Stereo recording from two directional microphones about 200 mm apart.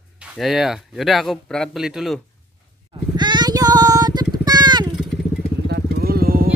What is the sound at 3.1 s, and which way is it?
Vehicle, 20° right (ahead or behind).